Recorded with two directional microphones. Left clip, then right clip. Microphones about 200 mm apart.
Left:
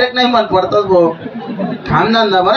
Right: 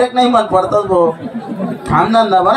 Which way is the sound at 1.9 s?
20° left (ahead or behind).